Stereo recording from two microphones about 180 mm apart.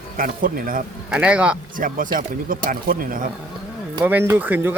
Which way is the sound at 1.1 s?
5° right (ahead or behind).